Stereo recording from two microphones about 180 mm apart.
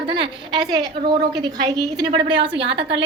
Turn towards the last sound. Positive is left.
turn(degrees=-30)  # may be behind; listen again after turning